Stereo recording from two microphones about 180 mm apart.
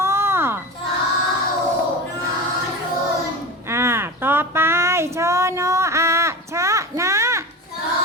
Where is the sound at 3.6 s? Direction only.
15° right (ahead or behind).